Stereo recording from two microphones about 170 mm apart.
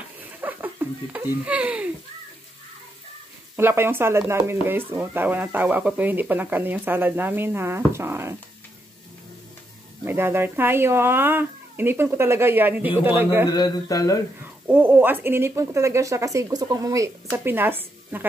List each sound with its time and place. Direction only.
0.2 s a sound: 10° right (ahead or behind)
3.5 s speech: 15° right (ahead or behind)
10.0 s speech: 15° right (ahead or behind)
13.5 s mantra: 25° left (ahead or behind)
14.4 s speech: 10° right (ahead or behind)